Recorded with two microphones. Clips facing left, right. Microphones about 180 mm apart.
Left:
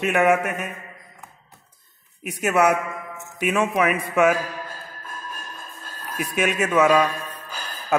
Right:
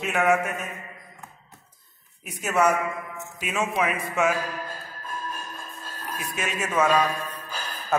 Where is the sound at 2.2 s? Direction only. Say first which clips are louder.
Left 3 dB; 65° left (ahead or behind).